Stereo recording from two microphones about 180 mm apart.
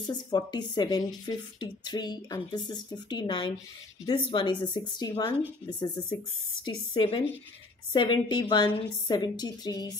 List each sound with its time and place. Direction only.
0.1 s speech: 25° left (ahead or behind)